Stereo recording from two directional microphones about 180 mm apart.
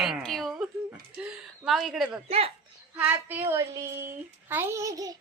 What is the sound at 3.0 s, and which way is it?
Speech, 10° right (ahead or behind).